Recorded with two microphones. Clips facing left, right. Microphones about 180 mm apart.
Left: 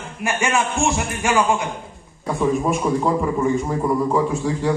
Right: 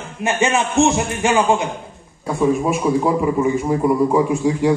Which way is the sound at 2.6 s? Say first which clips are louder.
Right 2 dB; 5° right (ahead or behind).